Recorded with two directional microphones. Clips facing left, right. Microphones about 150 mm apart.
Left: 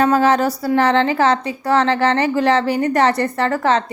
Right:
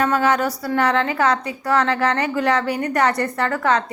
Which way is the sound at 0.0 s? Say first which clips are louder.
Left 4 dB; 30° left (ahead or behind).